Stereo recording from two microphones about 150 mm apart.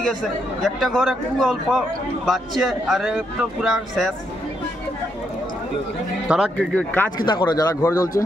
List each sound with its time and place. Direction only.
0.6 s a man's voice: centre (ahead or behind)
6.2 s a man's voice: 5° right (ahead or behind)
6.7 s speech: 10° left (ahead or behind)
7.2 s speech: 30° left (ahead or behind)